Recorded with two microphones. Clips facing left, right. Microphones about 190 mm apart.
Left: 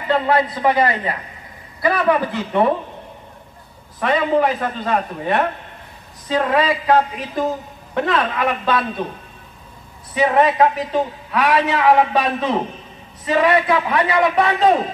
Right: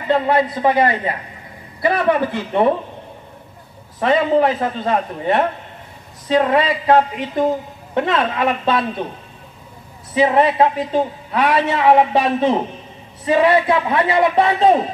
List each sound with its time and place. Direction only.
0.6 s a man's voice: 25° right (ahead or behind)
4.0 s a man's voice: 30° right (ahead or behind)
10.1 s a man's voice: 25° right (ahead or behind)